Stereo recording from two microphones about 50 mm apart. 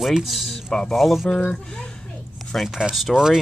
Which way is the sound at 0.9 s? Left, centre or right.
Centre.